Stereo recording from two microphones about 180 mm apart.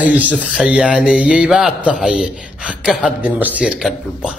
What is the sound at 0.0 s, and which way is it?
Speech, 10° right (ahead or behind).